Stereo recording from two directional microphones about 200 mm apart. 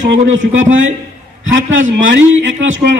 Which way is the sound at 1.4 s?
75° right (ahead or behind).